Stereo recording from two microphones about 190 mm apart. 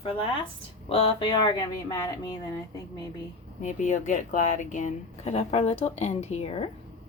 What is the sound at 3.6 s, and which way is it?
A woman's voice, 40° left (ahead or behind).